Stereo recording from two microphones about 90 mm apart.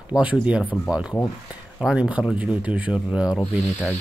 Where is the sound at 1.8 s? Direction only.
10° right (ahead or behind).